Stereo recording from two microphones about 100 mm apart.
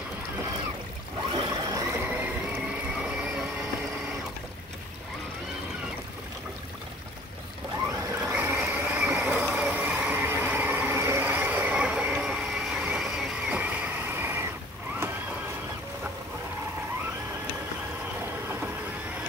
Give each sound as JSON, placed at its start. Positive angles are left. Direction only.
{"t": 1.5, "sound": "a sound", "side_deg": -35}
{"t": 2.0, "sound": "vehicle", "side_deg": -15}
{"t": 8.1, "sound": "boat", "side_deg": -15}
{"t": 8.5, "sound": "vehicle", "side_deg": -15}
{"t": 13.6, "sound": "vehicle", "side_deg": -15}